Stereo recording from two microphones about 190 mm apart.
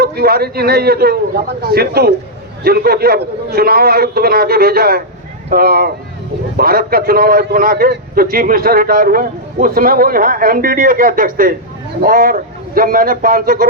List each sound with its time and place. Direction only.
0.0 s a man's voice: 55° right (ahead or behind)